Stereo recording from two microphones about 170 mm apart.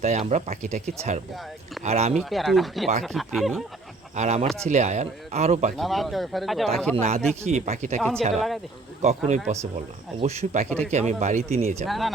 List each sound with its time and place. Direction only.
0.0 s speech: 40° right (ahead or behind)
2.3 s speech: centre (ahead or behind)
4.1 s speech: 40° right (ahead or behind)
5.7 s speech: centre (ahead or behind)
6.9 s speech: 40° right (ahead or behind)
7.9 s speech: 5° left (ahead or behind)
9.0 s speech: 40° right (ahead or behind)
11.9 s speech: centre (ahead or behind)